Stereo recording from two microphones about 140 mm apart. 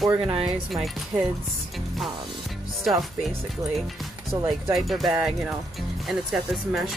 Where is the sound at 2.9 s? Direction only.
5° right (ahead or behind).